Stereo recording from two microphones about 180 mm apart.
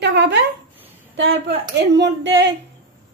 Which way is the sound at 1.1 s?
90° right.